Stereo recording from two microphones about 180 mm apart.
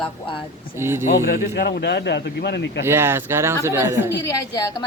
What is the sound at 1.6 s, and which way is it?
Speech, 60° left (ahead or behind).